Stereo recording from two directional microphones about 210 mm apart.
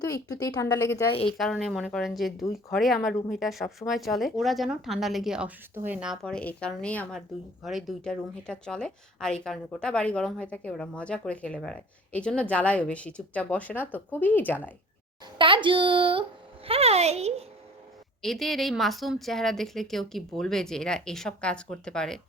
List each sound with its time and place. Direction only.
0.0 s a woman's voice: 15° left (ahead or behind)
1.3 s speech: centre (ahead or behind)
15.4 s a sound: 25° right (ahead or behind)
16.6 s a woman's voice: 30° right (ahead or behind)
18.2 s speech: centre (ahead or behind)